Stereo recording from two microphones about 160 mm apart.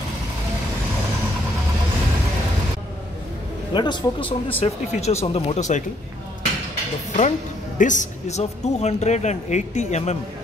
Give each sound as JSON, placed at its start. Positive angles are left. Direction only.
{"t": 3.7, "sound": "speech", "side_deg": 30}
{"t": 4.6, "sound": "speech", "side_deg": 45}
{"t": 7.2, "sound": "speech", "side_deg": 50}